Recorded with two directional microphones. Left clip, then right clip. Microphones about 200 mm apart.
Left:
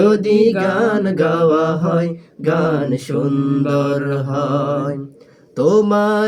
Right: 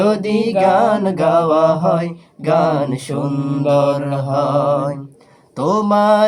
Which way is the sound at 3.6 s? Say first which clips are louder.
Right 8 dB; 25° left (ahead or behind).